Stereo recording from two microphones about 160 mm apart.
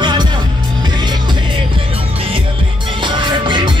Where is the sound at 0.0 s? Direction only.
30° right (ahead or behind).